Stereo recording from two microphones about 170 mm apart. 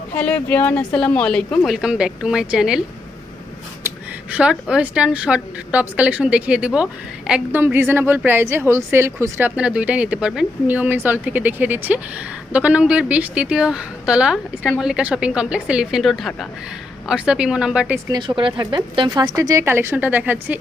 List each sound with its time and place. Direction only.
0.2 s a woman's voice: 10° left (ahead or behind)
3.8 s a sound: 5° right (ahead or behind)
4.7 s a woman's voice: 5° right (ahead or behind)
18.1 s speech: 25° right (ahead or behind); by 20.6 s 10° right (ahead or behind)